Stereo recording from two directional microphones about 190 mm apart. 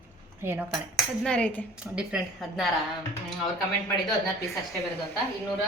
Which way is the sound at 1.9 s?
5° right (ahead or behind).